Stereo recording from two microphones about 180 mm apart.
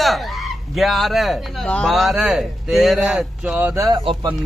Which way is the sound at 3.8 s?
25° right (ahead or behind).